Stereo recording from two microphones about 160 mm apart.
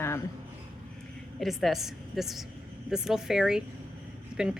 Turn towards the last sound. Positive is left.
turn(degrees=-5)  # may be behind; listen again after turning